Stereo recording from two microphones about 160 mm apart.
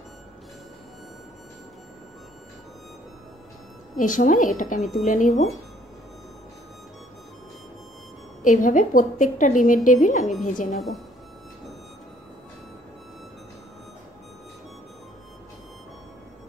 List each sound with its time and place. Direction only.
3.9 s a woman's voice: 55° left (ahead or behind)
8.5 s a woman's voice: 55° left (ahead or behind)